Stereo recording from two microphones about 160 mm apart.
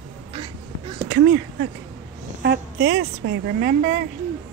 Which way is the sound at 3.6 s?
65° right (ahead or behind).